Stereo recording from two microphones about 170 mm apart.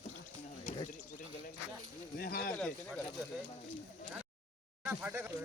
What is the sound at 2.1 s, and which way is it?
Speech, 60° left (ahead or behind).